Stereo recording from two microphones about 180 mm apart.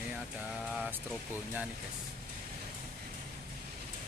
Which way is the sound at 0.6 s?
Centre (ahead or behind).